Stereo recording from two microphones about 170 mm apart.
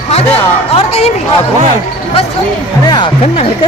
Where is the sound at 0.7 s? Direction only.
40° left (ahead or behind).